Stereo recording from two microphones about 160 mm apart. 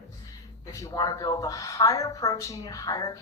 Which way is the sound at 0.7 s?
20° left (ahead or behind).